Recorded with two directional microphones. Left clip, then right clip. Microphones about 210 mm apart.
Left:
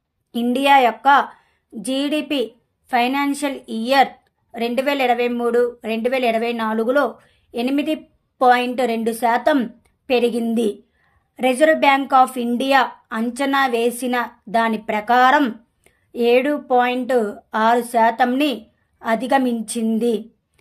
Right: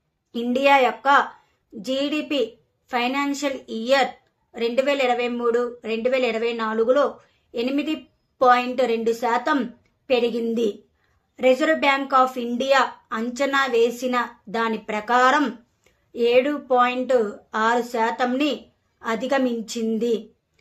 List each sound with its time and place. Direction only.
0.3 s a woman's voice: 45° left (ahead or behind)